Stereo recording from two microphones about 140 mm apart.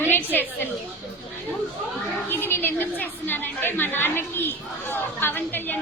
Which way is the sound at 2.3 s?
15° left (ahead or behind).